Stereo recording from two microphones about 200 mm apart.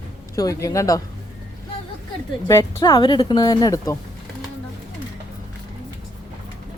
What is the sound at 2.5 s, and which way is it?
Speech, 15° left (ahead or behind).